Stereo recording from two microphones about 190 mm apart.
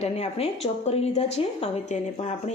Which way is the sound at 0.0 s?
30° left (ahead or behind).